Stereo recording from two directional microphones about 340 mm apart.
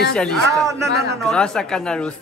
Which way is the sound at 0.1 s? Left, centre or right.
Centre.